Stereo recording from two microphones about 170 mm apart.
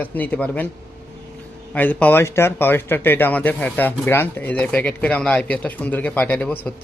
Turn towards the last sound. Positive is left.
turn(degrees=10)  # may be behind; listen again after turning